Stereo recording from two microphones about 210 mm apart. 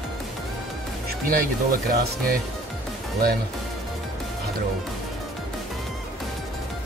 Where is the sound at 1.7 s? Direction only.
45° right (ahead or behind).